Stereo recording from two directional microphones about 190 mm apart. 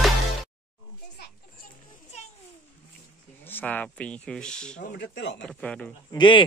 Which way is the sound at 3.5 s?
10° left (ahead or behind).